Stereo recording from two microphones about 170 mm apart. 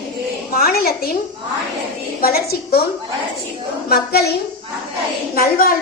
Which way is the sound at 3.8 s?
65° left (ahead or behind).